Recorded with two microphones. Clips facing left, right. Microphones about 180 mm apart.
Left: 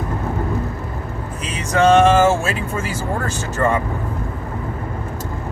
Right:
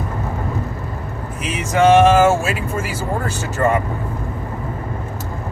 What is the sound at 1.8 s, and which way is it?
Speech, 10° right (ahead or behind).